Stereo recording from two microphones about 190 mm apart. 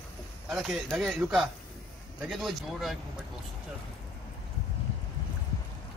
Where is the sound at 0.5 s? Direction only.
Centre (ahead or behind).